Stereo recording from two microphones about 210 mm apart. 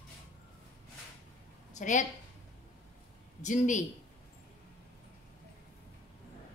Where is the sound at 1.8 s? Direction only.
35° left (ahead or behind).